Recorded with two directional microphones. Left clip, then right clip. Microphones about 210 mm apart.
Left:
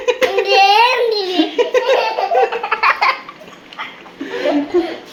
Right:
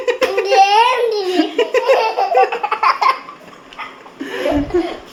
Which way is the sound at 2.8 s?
10° right (ahead or behind).